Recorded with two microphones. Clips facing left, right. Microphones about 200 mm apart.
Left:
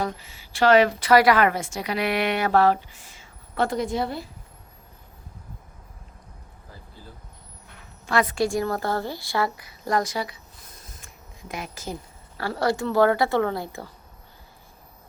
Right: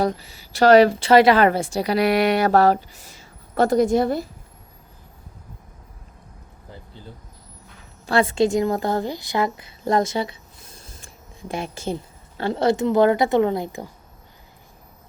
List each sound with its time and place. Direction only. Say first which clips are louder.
0.0 s a woman's voice: right 6 dB; 35° right (ahead or behind)
8.0 s a woman's voice: right 4 dB; 30° right (ahead or behind)
10.8 s a sound: right 3 dB; 30° right (ahead or behind)
12.4 s a woman's voice: right 5 dB; 20° right (ahead or behind)